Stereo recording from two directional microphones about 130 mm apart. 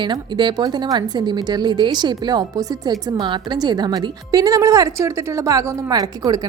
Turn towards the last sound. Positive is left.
turn(degrees=-30)  # may be behind; listen again after turning